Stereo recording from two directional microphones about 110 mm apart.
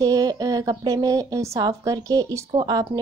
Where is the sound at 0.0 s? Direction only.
35° right (ahead or behind).